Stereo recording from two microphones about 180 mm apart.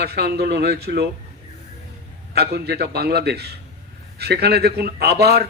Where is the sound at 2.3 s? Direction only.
65° right (ahead or behind).